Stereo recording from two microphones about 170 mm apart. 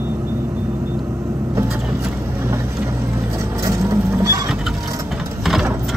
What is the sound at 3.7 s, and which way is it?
Vehicle, 15° right (ahead or behind).